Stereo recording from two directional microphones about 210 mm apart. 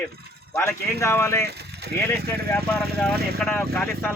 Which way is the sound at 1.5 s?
50° right (ahead or behind).